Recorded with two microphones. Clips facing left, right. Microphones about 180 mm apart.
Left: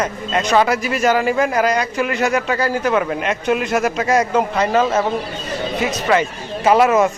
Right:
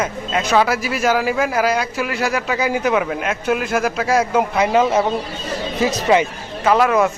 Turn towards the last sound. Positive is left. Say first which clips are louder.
# left 2 dB
turn(degrees=5)  # may be behind; listen again after turning